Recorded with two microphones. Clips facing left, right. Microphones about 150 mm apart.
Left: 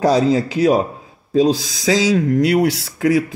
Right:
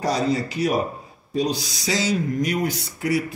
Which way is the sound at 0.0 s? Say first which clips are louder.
Left 8 dB; 90° left.